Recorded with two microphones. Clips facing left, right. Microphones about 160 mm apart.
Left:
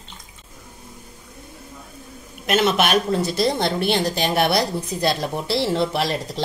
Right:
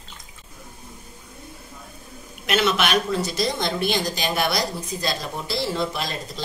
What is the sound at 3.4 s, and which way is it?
A woman's voice, 60° left (ahead or behind).